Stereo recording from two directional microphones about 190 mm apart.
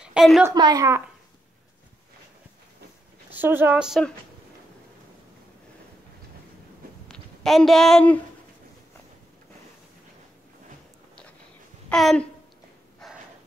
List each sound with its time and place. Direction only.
0.0 s a woman's voice: 5° right (ahead or behind)
0.5 s a woman's voice: 20° right (ahead or behind)
3.3 s a woman's voice: 10° right (ahead or behind)
7.1 s speech: centre (ahead or behind)
11.9 s speech: 5° left (ahead or behind)
13.0 s a sound: centre (ahead or behind)